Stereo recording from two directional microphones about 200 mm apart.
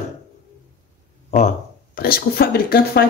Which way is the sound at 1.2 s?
35° left (ahead or behind).